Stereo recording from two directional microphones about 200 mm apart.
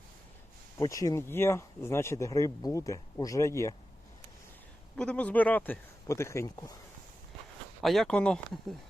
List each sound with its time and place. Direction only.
0.8 s speech: 15° left (ahead or behind)
4.9 s speech: 5° left (ahead or behind)
7.8 s speech: centre (ahead or behind)